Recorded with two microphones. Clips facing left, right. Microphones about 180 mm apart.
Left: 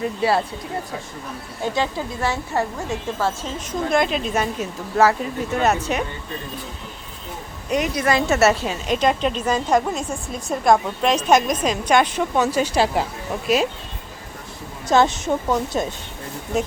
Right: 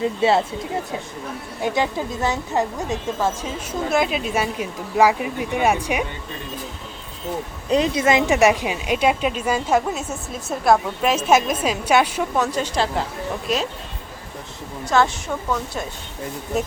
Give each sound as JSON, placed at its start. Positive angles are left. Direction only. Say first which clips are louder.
{"t": 0.0, "sound": "speech", "louder": "right 2 dB", "side_deg": -25}
{"t": 1.6, "sound": "a woman's voice", "louder": "right 1 dB", "side_deg": -15}
{"t": 7.7, "sound": "a woman's voice", "louder": "right 2 dB", "side_deg": -25}
{"t": 12.5, "sound": "a woman's voice", "louder": "left 3 dB", "side_deg": 10}
{"t": 14.8, "sound": "a woman's voice", "louder": "left 3 dB", "side_deg": 20}